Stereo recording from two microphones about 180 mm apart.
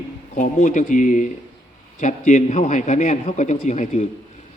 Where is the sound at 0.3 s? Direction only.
45° left (ahead or behind).